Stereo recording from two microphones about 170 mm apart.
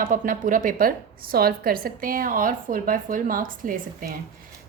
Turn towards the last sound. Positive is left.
turn(degrees=-55)  # may be behind; listen again after turning